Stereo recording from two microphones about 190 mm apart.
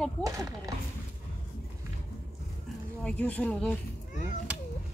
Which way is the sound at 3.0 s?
5° left (ahead or behind).